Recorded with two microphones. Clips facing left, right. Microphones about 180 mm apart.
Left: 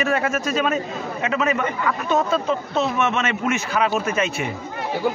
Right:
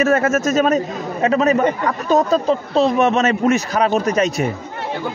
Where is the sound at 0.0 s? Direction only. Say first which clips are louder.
Right 6 dB; 45° right (ahead or behind).